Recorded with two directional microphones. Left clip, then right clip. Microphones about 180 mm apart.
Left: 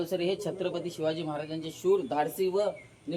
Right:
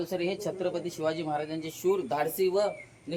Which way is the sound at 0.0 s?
Centre (ahead or behind).